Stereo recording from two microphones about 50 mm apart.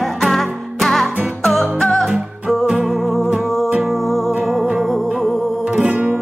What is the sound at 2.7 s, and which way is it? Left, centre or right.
Music, centre.